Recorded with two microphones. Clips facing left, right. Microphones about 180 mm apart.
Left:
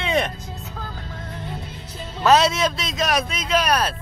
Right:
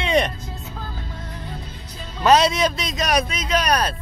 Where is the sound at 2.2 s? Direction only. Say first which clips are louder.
Right 1 dB; centre (ahead or behind).